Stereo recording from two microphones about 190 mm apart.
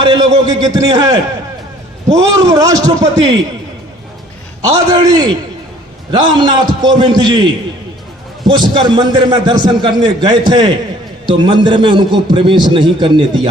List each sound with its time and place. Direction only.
0.0 s a man's voice: 20° right (ahead or behind)
4.6 s a man's voice: 20° right (ahead or behind)
8.4 s a man's voice: 25° right (ahead or behind)